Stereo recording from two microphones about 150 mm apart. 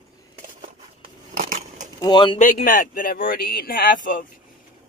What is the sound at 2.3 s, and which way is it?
Speech, 60° left (ahead or behind).